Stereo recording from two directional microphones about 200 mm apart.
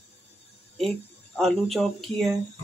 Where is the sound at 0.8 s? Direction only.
Centre (ahead or behind).